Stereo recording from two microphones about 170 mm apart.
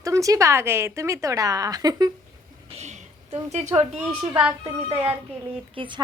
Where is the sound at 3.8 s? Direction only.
10° right (ahead or behind).